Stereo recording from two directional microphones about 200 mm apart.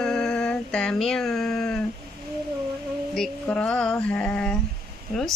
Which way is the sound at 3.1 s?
5° left (ahead or behind).